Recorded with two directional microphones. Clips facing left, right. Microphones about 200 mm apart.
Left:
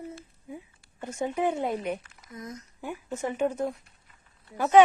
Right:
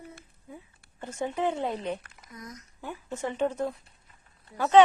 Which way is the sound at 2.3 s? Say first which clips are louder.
Left 4 dB; 25° left (ahead or behind).